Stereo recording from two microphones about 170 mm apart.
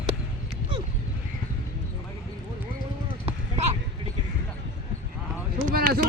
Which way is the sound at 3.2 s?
40° right (ahead or behind).